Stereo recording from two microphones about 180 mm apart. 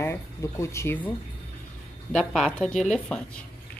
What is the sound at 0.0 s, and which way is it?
Speech, 15° left (ahead or behind).